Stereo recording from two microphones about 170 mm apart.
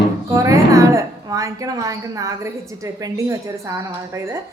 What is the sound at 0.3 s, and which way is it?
A woman's voice, 20° right (ahead or behind).